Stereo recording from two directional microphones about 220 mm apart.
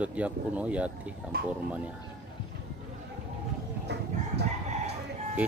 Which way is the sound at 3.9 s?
50° right (ahead or behind).